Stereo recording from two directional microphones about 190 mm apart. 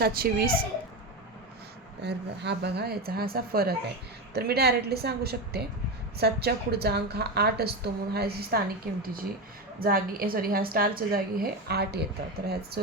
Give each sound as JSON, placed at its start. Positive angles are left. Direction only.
{"t": 0.0, "sound": "a woman's voice", "side_deg": -55}
{"t": 2.0, "sound": "a woman's voice", "side_deg": -60}